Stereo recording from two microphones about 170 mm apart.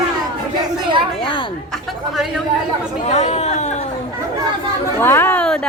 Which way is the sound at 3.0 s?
40° left (ahead or behind).